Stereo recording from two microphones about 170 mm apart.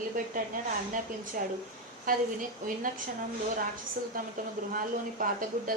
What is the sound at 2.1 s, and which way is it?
Speech, 55° right (ahead or behind).